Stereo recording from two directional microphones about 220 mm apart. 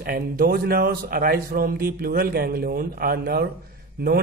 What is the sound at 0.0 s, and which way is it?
A man's voice, 40° right (ahead or behind).